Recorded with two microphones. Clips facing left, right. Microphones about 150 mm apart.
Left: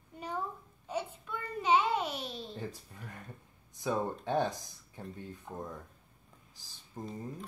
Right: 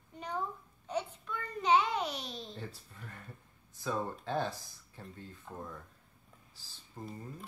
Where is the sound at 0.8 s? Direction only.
10° left (ahead or behind).